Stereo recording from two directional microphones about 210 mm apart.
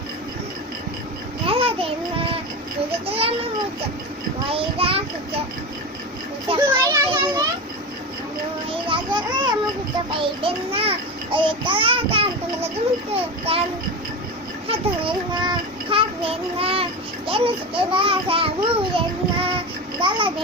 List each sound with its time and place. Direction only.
1.5 s a sound: 25° right (ahead or behind)
4.5 s a child's voice: 25° right (ahead or behind)
6.5 s a child's voice: 25° right (ahead or behind)
6.8 s children playing: 15° right (ahead or behind)
8.7 s children playing: 25° right (ahead or behind)
10.2 s a child's voice: 25° right (ahead or behind)
14.7 s child singing: 25° right (ahead or behind)
17.2 s a child's voice: 25° right (ahead or behind)